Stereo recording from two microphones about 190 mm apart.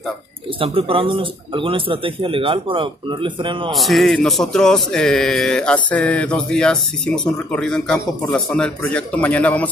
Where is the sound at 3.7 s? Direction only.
Centre (ahead or behind).